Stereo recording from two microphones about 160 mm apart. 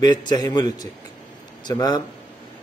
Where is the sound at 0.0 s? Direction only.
25° left (ahead or behind).